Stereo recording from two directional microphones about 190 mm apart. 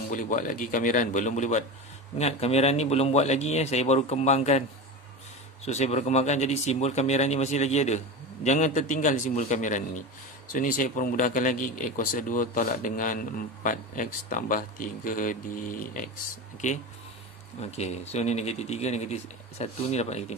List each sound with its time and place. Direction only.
0.1 s speech: 45° left (ahead or behind)
5.7 s speech: 35° left (ahead or behind)